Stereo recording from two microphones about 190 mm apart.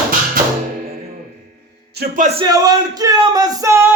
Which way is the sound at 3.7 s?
15° right (ahead or behind).